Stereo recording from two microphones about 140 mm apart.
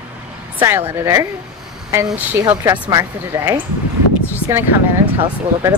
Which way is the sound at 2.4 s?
25° right (ahead or behind).